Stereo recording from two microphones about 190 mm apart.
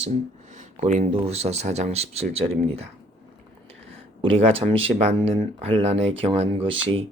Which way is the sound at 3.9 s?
30° right (ahead or behind).